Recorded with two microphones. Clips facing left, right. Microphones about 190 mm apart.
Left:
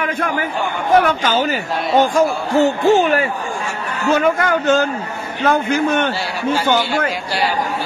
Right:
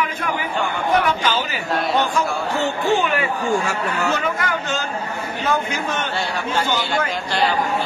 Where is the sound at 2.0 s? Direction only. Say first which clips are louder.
Left 6 dB; 40° left (ahead or behind).